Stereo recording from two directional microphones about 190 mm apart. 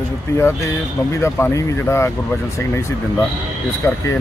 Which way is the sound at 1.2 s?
15° left (ahead or behind).